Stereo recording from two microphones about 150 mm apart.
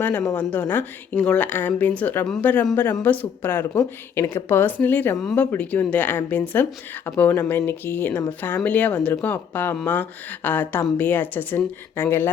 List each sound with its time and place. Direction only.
0.0 s speech: 10° left (ahead or behind)